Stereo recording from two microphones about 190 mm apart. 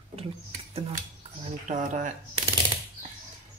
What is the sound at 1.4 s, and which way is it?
Speech, 40° right (ahead or behind).